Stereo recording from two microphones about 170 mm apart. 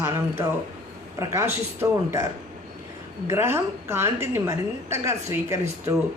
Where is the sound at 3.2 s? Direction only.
15° right (ahead or behind).